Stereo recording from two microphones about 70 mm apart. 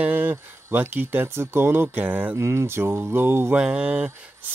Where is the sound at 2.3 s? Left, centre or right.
Right.